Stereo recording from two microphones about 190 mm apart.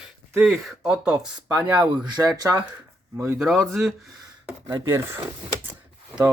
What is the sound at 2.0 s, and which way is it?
Speech, 20° right (ahead or behind).